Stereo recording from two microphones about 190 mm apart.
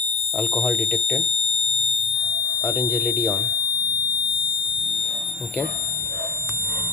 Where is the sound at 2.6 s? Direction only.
5° left (ahead or behind).